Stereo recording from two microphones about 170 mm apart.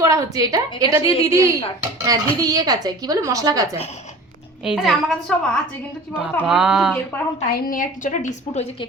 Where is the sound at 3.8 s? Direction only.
40° left (ahead or behind).